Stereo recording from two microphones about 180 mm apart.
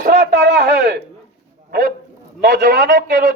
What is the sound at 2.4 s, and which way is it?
Speech, 60° right (ahead or behind).